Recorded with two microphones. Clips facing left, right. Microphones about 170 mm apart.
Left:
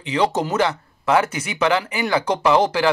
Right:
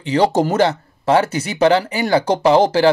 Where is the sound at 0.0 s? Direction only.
35° right (ahead or behind).